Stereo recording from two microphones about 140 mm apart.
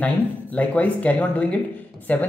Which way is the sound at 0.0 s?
10° left (ahead or behind).